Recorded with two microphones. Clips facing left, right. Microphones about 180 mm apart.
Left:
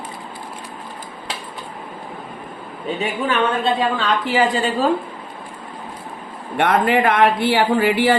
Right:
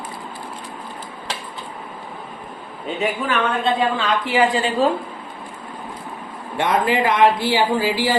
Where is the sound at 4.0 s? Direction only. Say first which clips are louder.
Even; 35° left (ahead or behind).